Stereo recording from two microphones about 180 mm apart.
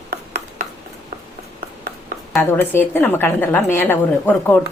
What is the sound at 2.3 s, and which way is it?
A woman's voice, 10° left (ahead or behind).